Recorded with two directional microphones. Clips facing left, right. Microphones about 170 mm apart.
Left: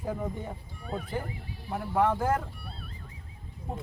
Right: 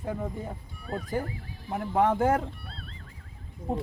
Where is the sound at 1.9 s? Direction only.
15° right (ahead or behind).